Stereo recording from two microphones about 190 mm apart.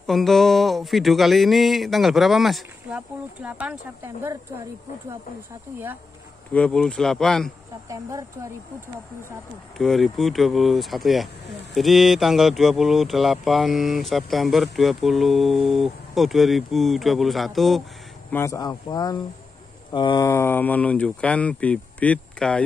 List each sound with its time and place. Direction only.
0.0 s speech: centre (ahead or behind)
6.5 s speech: 5° left (ahead or behind)
7.9 s speech: 15° right (ahead or behind)
9.8 s speech: centre (ahead or behind)
18.3 s speech: 15° left (ahead or behind)
20.2 s speech: 10° left (ahead or behind)